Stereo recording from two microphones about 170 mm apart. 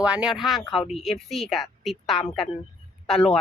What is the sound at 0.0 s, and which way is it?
Speech, 5° right (ahead or behind).